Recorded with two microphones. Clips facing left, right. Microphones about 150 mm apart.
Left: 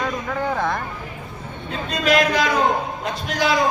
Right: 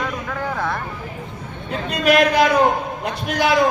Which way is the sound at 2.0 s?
60° right (ahead or behind).